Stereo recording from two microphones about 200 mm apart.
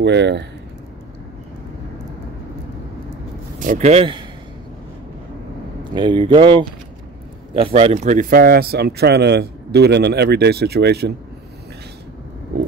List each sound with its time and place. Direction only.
0.0 s speech: 60° right (ahead or behind)
3.5 s speech: 40° right (ahead or behind)
5.9 s speech: 25° right (ahead or behind); by 11.1 s 55° right (ahead or behind)